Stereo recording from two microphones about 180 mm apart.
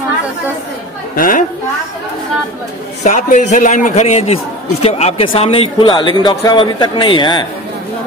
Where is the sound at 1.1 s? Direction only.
50° left (ahead or behind).